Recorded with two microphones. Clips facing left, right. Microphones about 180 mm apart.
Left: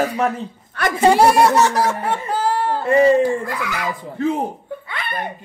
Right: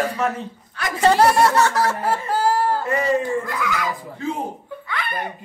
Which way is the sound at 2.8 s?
30° left (ahead or behind).